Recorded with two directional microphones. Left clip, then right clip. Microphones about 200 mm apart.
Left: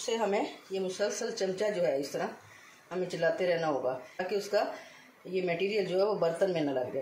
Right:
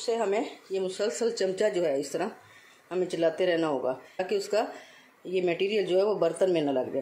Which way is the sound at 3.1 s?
50° right (ahead or behind).